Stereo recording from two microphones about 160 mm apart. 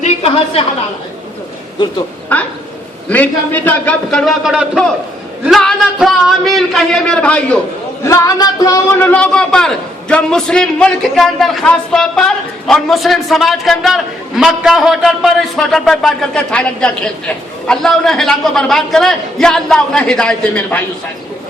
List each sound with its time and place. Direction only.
0.0 s a sound: 40° left (ahead or behind)
2.3 s a man's voice: 10° left (ahead or behind)
8.0 s a man's voice: 20° left (ahead or behind)